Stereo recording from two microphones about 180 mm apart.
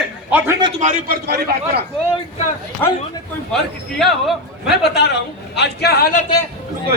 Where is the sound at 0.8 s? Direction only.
50° right (ahead or behind).